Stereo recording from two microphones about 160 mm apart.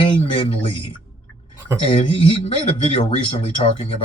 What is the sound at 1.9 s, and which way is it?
A man's voice, 35° left (ahead or behind).